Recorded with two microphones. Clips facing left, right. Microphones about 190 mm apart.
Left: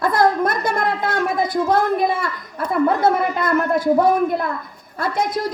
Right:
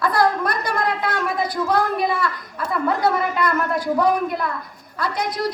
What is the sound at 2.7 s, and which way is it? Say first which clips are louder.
A woman's voice: left 4 dB; 25° left (ahead or behind).